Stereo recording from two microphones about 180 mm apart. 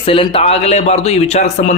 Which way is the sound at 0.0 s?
30° left (ahead or behind).